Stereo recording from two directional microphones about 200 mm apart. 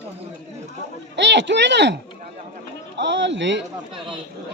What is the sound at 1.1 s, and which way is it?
Speech, 60° right (ahead or behind).